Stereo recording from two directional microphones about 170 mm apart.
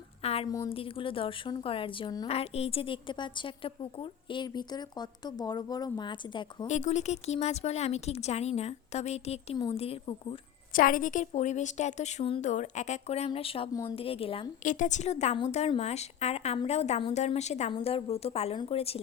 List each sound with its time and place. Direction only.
0.2 s a sound: 35° left (ahead or behind)
0.4 s a woman's voice: 20° left (ahead or behind)
0.7 s a woman's voice: 30° left (ahead or behind)
6.7 s speech: 45° left (ahead or behind)
10.8 s a woman's voice: 55° left (ahead or behind); by 14.5 s 35° left (ahead or behind)
14.6 s a woman's voice: 50° left (ahead or behind)